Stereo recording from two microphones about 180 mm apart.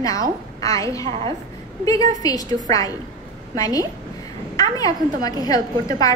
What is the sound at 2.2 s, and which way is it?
Speech, 20° left (ahead or behind).